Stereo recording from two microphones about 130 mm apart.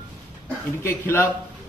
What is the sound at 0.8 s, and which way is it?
Speech, 20° left (ahead or behind).